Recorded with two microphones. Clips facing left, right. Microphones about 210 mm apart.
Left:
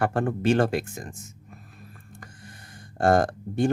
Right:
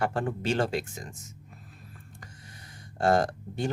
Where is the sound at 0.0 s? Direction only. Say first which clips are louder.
Left 5 dB; 55° left (ahead or behind).